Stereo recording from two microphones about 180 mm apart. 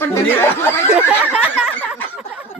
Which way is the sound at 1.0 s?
10° right (ahead or behind).